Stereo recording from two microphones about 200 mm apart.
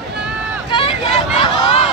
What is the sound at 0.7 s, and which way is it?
Vehicle, 30° left (ahead or behind).